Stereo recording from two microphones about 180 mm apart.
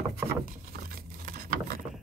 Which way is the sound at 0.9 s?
55° right (ahead or behind).